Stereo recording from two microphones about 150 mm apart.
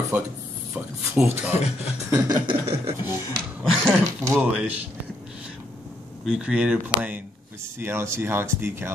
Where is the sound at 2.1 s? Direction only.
25° right (ahead or behind).